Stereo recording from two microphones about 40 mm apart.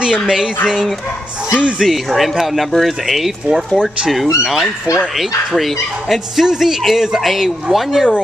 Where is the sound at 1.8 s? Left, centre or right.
Centre.